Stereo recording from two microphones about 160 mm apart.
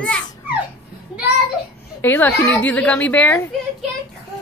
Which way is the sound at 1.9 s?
10° left (ahead or behind).